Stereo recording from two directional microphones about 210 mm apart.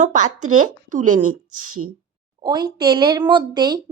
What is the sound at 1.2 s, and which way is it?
Speech, 90° right.